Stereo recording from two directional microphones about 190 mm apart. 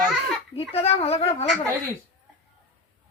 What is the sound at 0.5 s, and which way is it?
Speech, 30° left (ahead or behind).